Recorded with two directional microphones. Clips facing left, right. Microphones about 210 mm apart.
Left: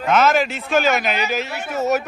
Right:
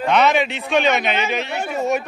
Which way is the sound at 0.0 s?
Centre (ahead or behind).